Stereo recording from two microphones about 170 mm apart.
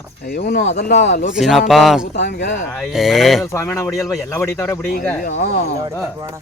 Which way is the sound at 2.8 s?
Centre (ahead or behind).